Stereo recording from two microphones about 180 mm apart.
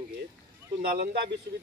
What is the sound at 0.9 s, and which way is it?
Speech, 60° right (ahead or behind).